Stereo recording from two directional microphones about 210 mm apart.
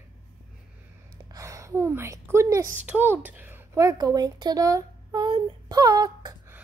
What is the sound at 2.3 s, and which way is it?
A woman's voice, 15° right (ahead or behind).